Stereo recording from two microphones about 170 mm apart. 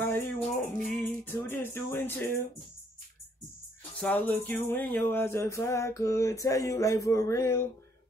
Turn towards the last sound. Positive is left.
turn(degrees=15)  # may be behind; listen again after turning